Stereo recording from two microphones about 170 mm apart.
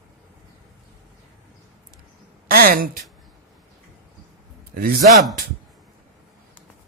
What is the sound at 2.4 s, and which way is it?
Speech, 60° right (ahead or behind).